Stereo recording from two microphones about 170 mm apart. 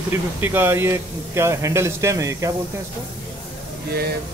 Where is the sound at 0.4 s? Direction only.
10° right (ahead or behind).